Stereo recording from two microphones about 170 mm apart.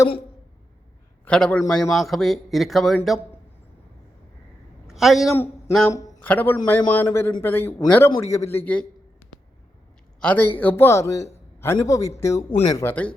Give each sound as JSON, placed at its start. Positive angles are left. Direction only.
{"t": 1.2, "sound": "a man's voice", "side_deg": 5}
{"t": 4.9, "sound": "a man's voice", "side_deg": 0}
{"t": 5.3, "sound": "a man's voice", "side_deg": 15}
{"t": 10.2, "sound": "a man's voice", "side_deg": 10}